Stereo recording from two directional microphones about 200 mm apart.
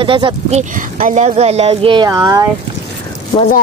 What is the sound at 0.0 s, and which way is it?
Speech, 25° right (ahead or behind).